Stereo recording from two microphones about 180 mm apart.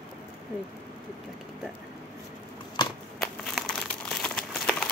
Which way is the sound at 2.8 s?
25° left (ahead or behind).